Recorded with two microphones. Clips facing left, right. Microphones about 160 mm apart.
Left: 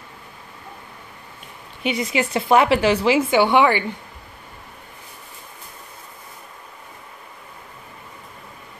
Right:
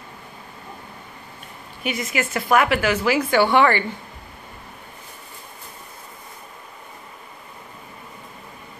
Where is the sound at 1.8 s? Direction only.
30° left (ahead or behind); by 3.8 s 15° left (ahead or behind).